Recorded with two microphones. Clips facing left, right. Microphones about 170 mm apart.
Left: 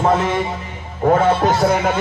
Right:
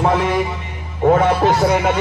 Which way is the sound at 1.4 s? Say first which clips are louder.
Right 1 dB; centre (ahead or behind).